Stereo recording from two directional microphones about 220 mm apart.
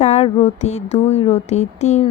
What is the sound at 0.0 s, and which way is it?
Speech, 30° left (ahead or behind).